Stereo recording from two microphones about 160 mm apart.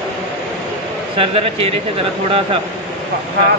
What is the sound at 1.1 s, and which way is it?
Speech, 35° right (ahead or behind).